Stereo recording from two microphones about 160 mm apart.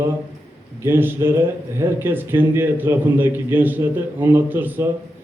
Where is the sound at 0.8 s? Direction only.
15° right (ahead or behind).